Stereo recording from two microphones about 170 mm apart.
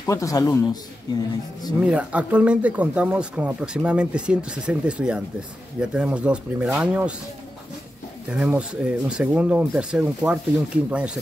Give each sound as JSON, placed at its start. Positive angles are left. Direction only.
{"t": 0.0, "sound": "a man's voice", "side_deg": 20}
{"t": 1.8, "sound": "speech", "side_deg": -5}
{"t": 8.3, "sound": "speech", "side_deg": -5}